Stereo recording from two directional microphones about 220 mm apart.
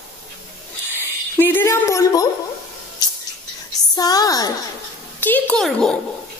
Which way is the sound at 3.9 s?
15° left (ahead or behind).